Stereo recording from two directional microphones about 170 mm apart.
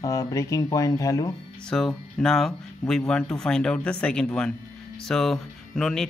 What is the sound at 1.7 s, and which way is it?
Speech, 5° left (ahead or behind).